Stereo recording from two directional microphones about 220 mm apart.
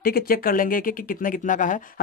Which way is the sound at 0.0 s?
40° left (ahead or behind).